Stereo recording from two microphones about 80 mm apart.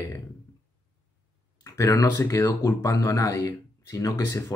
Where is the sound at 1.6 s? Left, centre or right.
Left.